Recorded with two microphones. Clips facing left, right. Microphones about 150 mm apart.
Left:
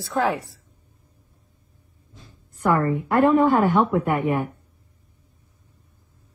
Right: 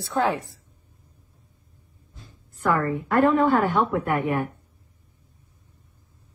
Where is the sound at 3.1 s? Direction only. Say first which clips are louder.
Left 2 dB; 15° left (ahead or behind).